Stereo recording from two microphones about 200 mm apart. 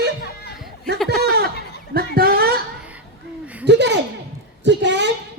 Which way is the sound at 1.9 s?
50° right (ahead or behind).